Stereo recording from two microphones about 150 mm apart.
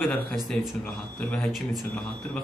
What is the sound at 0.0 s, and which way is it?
A man's voice, 10° left (ahead or behind).